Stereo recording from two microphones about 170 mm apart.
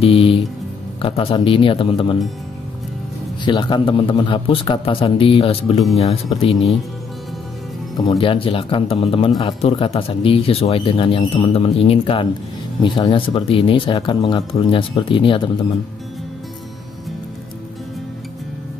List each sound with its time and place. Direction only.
0.0 s speech: 35° left (ahead or behind)
3.4 s speech: 30° left (ahead or behind)
8.0 s speech: 30° left (ahead or behind)